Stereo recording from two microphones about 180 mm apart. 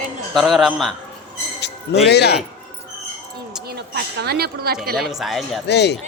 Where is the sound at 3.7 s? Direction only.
65° right (ahead or behind).